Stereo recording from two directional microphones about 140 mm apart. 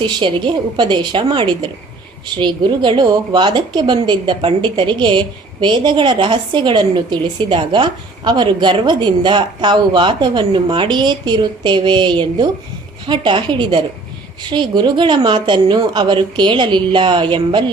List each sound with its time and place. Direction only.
0.0 s a woman's voice: 35° right (ahead or behind)